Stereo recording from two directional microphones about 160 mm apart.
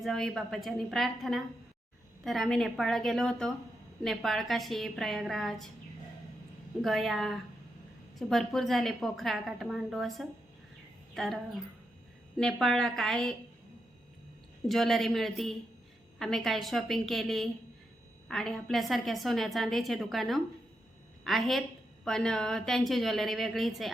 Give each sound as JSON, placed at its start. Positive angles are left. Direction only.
{"t": 0.0, "sound": "a woman's voice", "side_deg": 0}
{"t": 6.8, "sound": "a woman's voice", "side_deg": 0}
{"t": 12.4, "sound": "a woman's voice", "side_deg": 5}
{"t": 14.7, "sound": "a woman's voice", "side_deg": 0}